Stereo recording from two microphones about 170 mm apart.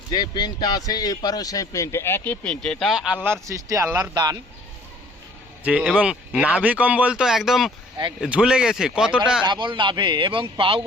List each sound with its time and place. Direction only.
0.1 s speech: 25° left (ahead or behind); by 3.3 s 5° right (ahead or behind)
3.4 s a man's voice: 20° right (ahead or behind)
5.6 s speech: 10° right (ahead or behind)
9.4 s a man's voice: 25° right (ahead or behind)